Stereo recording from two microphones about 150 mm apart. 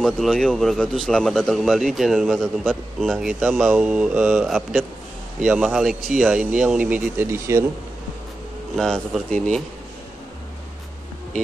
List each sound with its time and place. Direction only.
0.0 s speech: centre (ahead or behind); by 7.6 s 20° right (ahead or behind)
8.7 s speech: centre (ahead or behind)